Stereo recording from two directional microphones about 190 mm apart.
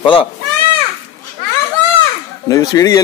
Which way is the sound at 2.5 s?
20° left (ahead or behind).